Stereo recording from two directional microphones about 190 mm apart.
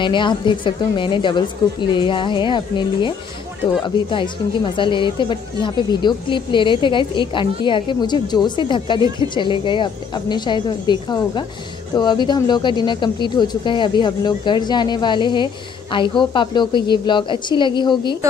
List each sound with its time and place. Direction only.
0.0 s speech: 25° left (ahead or behind)